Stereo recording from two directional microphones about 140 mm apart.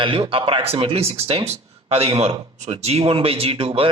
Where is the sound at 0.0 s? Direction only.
35° right (ahead or behind).